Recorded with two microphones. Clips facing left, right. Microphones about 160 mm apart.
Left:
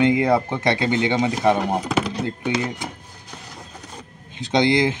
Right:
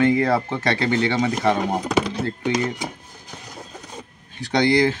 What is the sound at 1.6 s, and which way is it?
Speech, centre (ahead or behind).